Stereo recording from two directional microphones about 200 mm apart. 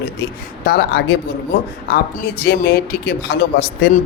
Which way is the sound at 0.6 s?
50° left (ahead or behind).